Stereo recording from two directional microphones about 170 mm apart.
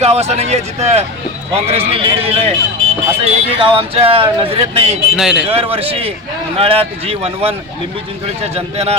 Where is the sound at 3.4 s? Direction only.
35° right (ahead or behind).